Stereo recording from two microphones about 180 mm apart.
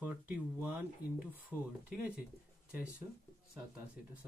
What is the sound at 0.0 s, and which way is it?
Speech, 10° right (ahead or behind).